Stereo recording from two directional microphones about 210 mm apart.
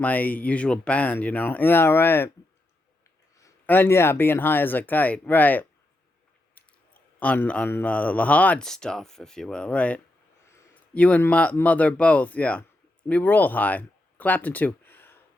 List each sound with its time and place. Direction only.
0.0 s speech: 10° left (ahead or behind)
3.3 s speech: 10° left (ahead or behind)